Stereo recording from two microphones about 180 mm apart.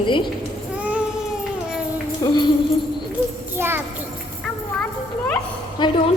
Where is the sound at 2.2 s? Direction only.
20° left (ahead or behind).